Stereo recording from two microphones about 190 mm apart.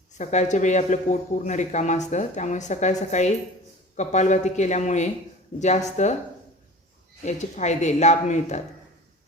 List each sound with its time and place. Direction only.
0.1 s speech: 40° left (ahead or behind)
7.3 s speech: 40° left (ahead or behind)